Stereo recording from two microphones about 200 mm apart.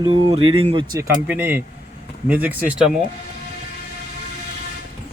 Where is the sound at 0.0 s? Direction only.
25° right (ahead or behind); by 2.9 s 5° right (ahead or behind).